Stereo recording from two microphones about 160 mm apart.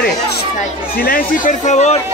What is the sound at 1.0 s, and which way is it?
Speech, 55° left (ahead or behind).